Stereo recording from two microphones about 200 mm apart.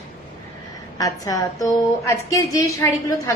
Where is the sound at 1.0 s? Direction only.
15° left (ahead or behind).